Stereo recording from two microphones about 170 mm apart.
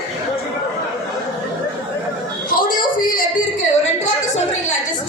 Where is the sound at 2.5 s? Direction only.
55° left (ahead or behind).